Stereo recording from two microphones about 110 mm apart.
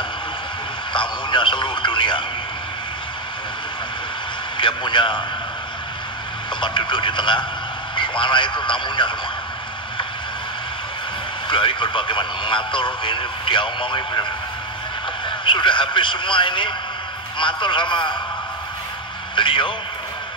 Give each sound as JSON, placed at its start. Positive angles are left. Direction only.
{"t": 0.9, "sound": "radio", "side_deg": 45}
{"t": 4.6, "sound": "speech", "side_deg": 45}
{"t": 6.6, "sound": "a man's voice", "side_deg": 45}
{"t": 11.4, "sound": "speech", "side_deg": 50}
{"t": 15.2, "sound": "a man's voice", "side_deg": 50}
{"t": 19.3, "sound": "a man's voice", "side_deg": 50}